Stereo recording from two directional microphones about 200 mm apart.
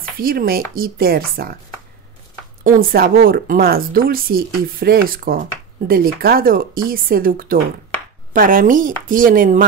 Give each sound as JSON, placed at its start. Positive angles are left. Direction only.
{"t": 0.2, "sound": "speech", "side_deg": -45}
{"t": 2.6, "sound": "speech", "side_deg": -45}